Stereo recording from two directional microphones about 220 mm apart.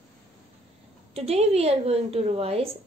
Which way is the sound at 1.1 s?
30° right (ahead or behind).